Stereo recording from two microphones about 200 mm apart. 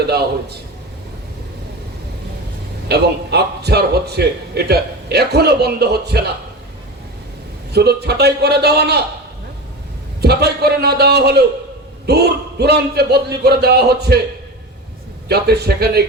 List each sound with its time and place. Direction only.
0.1 s a man's voice: 55° right (ahead or behind)
2.9 s a man's voice: 55° right (ahead or behind)
7.7 s a man's voice: 55° right (ahead or behind)
10.2 s a man's voice: 55° right (ahead or behind)
15.3 s a man's voice: 55° right (ahead or behind)